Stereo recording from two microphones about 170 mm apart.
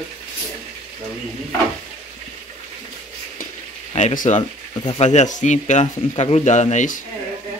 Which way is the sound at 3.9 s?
45° left (ahead or behind).